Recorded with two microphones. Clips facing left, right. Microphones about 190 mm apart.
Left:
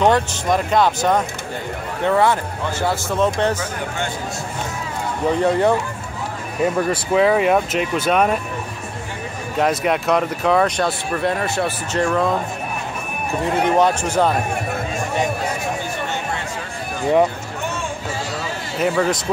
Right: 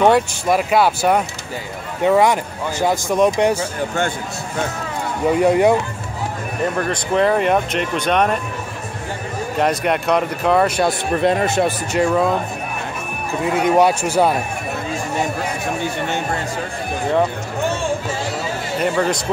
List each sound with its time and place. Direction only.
0.0 s speech: 10° right (ahead or behind)
5.3 s speech: 10° right (ahead or behind)
6.6 s speech: 5° left (ahead or behind)
9.6 s speech: centre (ahead or behind)
10.9 s speech: 20° right (ahead or behind)
12.0 s speech: 5° right (ahead or behind)
13.4 s speech: 10° right (ahead or behind)
18.8 s speech: centre (ahead or behind)